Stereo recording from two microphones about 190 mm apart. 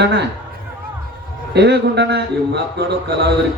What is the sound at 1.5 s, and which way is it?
Speech, 60° right (ahead or behind).